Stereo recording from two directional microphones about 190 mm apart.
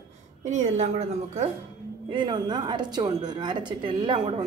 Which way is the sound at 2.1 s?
25° right (ahead or behind).